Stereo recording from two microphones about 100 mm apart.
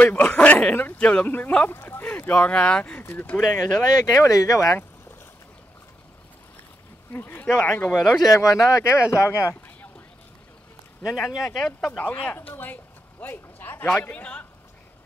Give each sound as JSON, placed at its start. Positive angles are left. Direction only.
{"t": 0.0, "sound": "speech", "side_deg": 15}
{"t": 3.5, "sound": "speech", "side_deg": 30}
{"t": 7.1, "sound": "speech", "side_deg": 20}
{"t": 8.3, "sound": "speech", "side_deg": 30}
{"t": 11.1, "sound": "speech", "side_deg": -5}
{"t": 12.0, "sound": "speech", "side_deg": 15}